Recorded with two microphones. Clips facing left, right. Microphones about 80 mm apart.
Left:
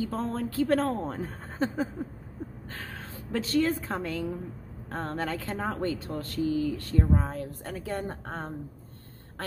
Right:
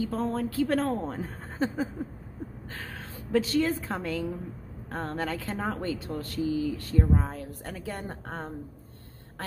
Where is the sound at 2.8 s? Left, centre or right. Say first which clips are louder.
Even; left.